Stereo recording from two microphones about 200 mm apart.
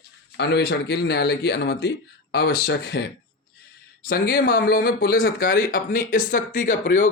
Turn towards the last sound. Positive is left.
turn(degrees=40)  # may be behind; listen again after turning